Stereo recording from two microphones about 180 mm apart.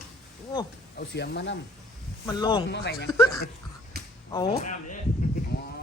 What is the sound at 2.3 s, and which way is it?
Speech, 25° left (ahead or behind).